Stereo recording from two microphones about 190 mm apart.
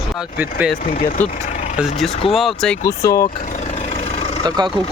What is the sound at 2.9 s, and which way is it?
Speech, 15° left (ahead or behind).